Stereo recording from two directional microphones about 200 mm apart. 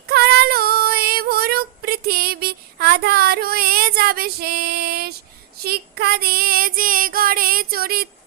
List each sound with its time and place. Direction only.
0.1 s female singing: 50° right (ahead or behind)
5.6 s child singing: 50° right (ahead or behind)